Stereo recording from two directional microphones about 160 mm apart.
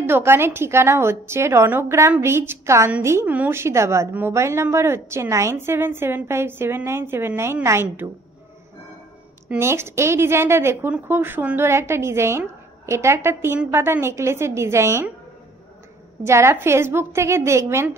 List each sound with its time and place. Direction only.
0.0 s a woman's voice: 15° right (ahead or behind)
9.5 s a woman's voice: 15° right (ahead or behind)
16.2 s a woman's voice: 15° right (ahead or behind)